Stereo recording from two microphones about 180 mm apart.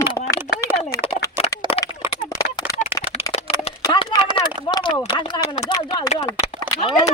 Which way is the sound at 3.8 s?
20° left (ahead or behind).